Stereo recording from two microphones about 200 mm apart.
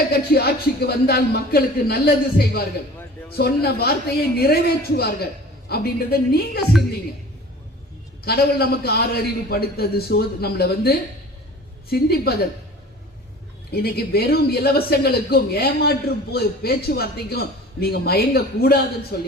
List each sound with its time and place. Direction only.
0.1 s speech: 50° left (ahead or behind)
8.2 s speech: 50° left (ahead or behind)
13.7 s speech: 50° left (ahead or behind)